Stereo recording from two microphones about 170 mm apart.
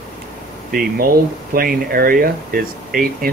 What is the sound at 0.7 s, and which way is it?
Speech, 60° right (ahead or behind).